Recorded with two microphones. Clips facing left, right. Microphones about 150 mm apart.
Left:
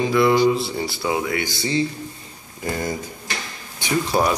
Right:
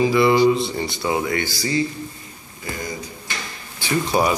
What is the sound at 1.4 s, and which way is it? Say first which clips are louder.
Speech: even; 25° left (ahead or behind).